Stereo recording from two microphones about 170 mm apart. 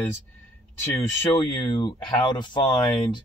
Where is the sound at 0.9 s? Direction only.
25° left (ahead or behind).